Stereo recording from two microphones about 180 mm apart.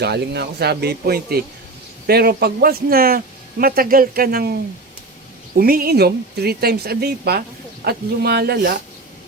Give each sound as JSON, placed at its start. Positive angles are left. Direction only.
{"t": 0.0, "sound": "a man's voice", "side_deg": -65}
{"t": 5.5, "sound": "a man's voice", "side_deg": -55}